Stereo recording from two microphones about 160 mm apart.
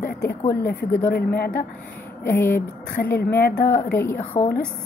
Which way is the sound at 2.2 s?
15° left (ahead or behind).